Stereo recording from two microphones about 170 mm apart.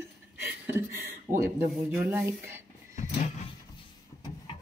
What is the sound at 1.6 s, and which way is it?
Speech, 10° right (ahead or behind).